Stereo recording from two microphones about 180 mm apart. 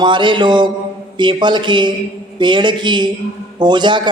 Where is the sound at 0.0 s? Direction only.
25° right (ahead or behind).